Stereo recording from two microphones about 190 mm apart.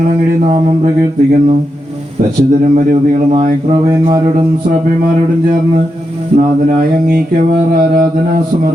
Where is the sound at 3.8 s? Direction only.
15° right (ahead or behind).